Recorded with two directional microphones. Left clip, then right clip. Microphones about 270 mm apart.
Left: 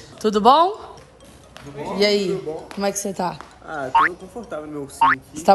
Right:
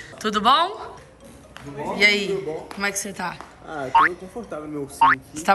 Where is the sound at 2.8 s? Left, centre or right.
Centre.